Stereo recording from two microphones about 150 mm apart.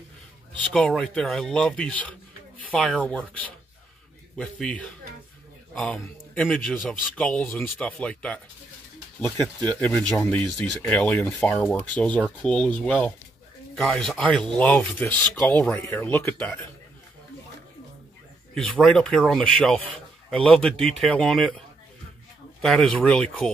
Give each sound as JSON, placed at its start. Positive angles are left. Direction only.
{"t": 0.6, "sound": "speech", "side_deg": 5}
{"t": 9.8, "sound": "speech", "side_deg": 10}
{"t": 18.5, "sound": "speech", "side_deg": 5}
{"t": 22.6, "sound": "speech", "side_deg": 5}